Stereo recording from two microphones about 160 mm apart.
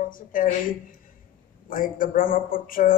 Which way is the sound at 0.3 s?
60° left (ahead or behind).